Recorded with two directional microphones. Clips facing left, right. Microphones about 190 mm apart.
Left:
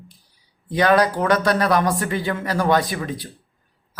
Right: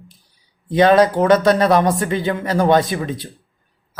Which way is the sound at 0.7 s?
25° right (ahead or behind).